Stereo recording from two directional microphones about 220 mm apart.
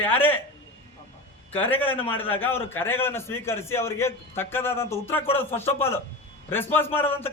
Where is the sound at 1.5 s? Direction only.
10° left (ahead or behind).